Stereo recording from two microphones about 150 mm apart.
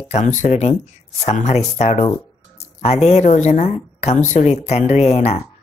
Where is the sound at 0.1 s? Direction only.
55° left (ahead or behind).